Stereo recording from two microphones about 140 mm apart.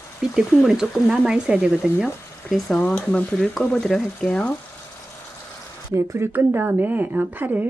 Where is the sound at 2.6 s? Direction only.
10° left (ahead or behind).